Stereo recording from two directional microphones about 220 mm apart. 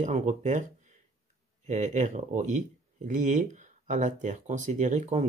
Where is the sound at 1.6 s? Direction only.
35° right (ahead or behind).